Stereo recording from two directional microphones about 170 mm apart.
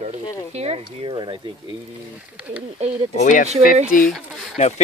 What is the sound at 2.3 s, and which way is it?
Speech, 10° right (ahead or behind).